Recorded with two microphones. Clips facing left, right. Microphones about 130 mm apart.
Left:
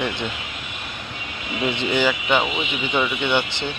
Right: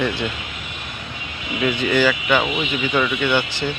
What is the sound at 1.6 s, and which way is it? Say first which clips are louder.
Speech: right 3 dB; 20° left (ahead or behind).